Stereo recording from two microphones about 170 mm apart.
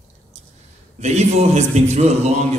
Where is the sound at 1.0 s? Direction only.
40° right (ahead or behind).